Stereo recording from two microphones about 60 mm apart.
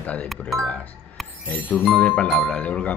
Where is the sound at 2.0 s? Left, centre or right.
Left.